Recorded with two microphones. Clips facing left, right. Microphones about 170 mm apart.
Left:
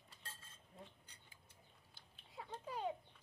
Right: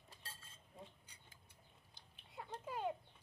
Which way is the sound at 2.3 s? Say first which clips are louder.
Right 1 dB; centre (ahead or behind).